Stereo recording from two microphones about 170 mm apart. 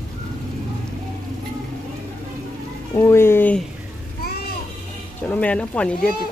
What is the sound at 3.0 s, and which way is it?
Speech, 15° left (ahead or behind).